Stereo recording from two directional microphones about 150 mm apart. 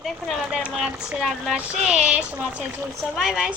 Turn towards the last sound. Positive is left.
turn(degrees=-5)  # may be behind; listen again after turning